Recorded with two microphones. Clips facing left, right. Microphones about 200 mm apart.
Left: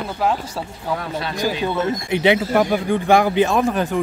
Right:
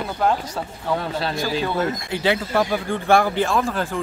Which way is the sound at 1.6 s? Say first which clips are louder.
Left 2 dB; 20° left (ahead or behind).